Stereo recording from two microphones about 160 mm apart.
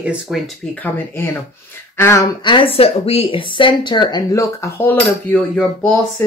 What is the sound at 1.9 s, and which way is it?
Speech, 15° left (ahead or behind).